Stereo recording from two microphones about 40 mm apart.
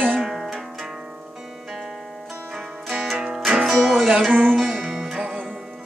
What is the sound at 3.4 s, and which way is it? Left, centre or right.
Music, right.